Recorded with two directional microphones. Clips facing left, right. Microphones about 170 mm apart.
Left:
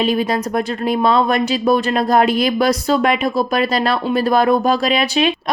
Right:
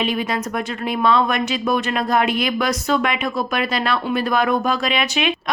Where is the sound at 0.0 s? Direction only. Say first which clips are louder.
Left 5 dB; 35° left (ahead or behind).